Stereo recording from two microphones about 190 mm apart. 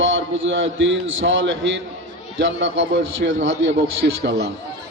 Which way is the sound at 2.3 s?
80° right.